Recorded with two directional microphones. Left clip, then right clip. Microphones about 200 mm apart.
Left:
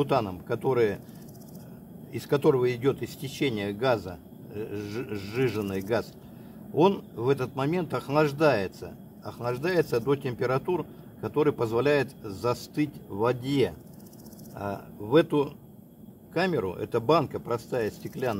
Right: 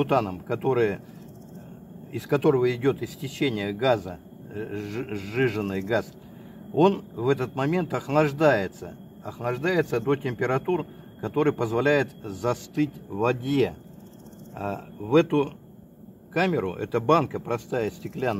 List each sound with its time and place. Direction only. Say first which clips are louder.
0.0 s speech: right 2 dB; 35° right (ahead or behind)
2.1 s speech: right 1 dB; 35° right (ahead or behind)